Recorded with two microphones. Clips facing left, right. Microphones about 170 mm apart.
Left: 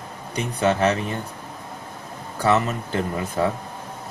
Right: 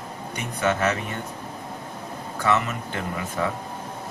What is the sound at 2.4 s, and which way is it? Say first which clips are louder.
Speech: left 3 dB; 35° left (ahead or behind).